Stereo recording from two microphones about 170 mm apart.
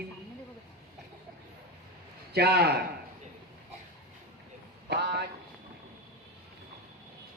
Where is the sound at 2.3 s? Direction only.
70° right (ahead or behind).